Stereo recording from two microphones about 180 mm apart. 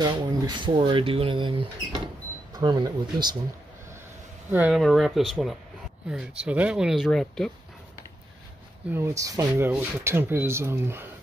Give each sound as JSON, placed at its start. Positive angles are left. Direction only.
{"t": 0.0, "sound": "speech", "side_deg": -25}
{"t": 4.5, "sound": "speech", "side_deg": -10}
{"t": 8.9, "sound": "speech", "side_deg": -15}